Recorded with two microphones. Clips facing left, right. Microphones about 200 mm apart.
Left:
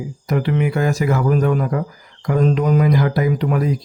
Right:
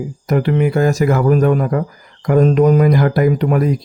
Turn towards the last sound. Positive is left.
turn(degrees=-50)  # may be behind; listen again after turning